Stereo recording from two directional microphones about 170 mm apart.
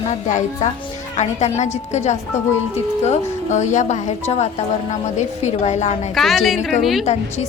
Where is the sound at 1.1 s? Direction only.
40° left (ahead or behind).